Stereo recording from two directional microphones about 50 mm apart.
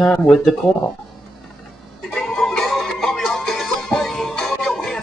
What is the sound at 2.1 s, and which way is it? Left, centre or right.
Music, centre.